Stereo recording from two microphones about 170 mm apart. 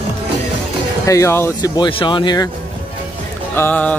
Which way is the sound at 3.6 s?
10° left (ahead or behind).